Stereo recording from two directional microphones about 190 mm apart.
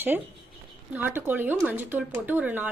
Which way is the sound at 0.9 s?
10° right (ahead or behind).